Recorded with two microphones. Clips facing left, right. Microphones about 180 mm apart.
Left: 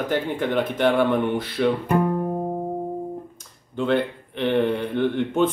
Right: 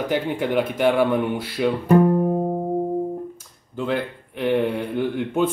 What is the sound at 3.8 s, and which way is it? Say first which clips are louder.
Speech: left 3 dB; 5° right (ahead or behind).